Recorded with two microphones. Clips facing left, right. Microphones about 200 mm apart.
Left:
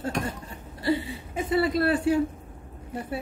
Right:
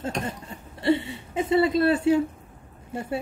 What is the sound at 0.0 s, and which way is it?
Speech, 25° right (ahead or behind).